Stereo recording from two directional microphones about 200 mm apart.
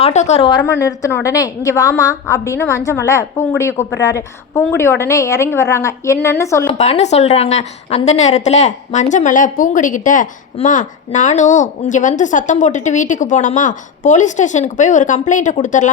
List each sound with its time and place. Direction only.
0.0 s a woman's voice: 35° left (ahead or behind)
0.6 s a woman's voice: 15° left (ahead or behind)
6.7 s a woman's voice: 35° left (ahead or behind)